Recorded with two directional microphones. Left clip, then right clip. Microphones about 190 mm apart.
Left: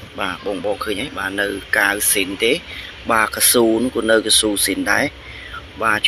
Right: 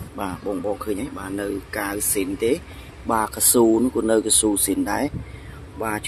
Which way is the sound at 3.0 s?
10° left (ahead or behind).